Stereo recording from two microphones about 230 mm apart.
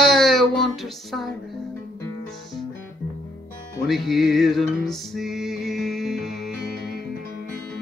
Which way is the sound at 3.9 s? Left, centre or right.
Centre.